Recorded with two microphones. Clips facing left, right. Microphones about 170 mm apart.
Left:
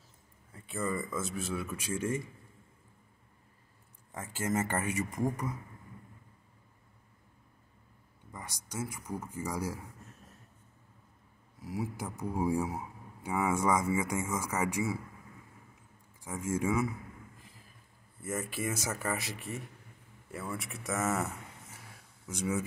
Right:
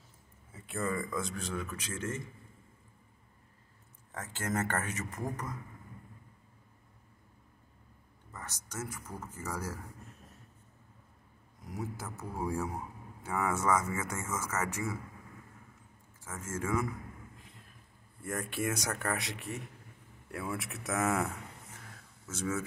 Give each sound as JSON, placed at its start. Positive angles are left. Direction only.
{"t": 0.5, "sound": "speech", "side_deg": 0}
{"t": 4.1, "sound": "speech", "side_deg": 10}
{"t": 8.3, "sound": "speech", "side_deg": 10}
{"t": 11.6, "sound": "speech", "side_deg": 10}
{"t": 16.3, "sound": "speech", "side_deg": 15}
{"t": 18.2, "sound": "speech", "side_deg": 0}
{"t": 22.3, "sound": "speech", "side_deg": 15}